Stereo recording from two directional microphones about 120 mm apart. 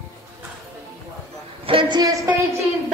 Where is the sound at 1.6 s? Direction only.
50° right (ahead or behind).